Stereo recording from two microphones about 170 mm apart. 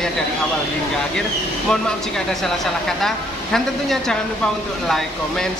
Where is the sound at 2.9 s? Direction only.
Centre (ahead or behind).